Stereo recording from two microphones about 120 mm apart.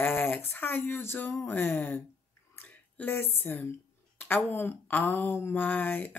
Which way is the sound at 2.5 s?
10° left (ahead or behind).